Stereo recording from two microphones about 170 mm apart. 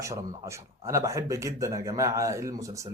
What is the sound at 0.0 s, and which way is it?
Speech, 20° right (ahead or behind).